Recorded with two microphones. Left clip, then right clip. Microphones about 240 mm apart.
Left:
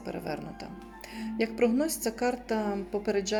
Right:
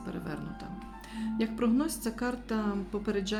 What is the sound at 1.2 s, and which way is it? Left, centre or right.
Speech, right.